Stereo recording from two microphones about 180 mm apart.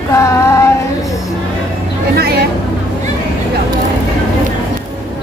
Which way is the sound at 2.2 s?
60° right (ahead or behind).